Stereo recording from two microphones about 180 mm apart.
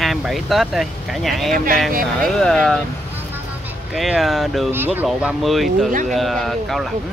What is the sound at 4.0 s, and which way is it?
Speech, centre (ahead or behind).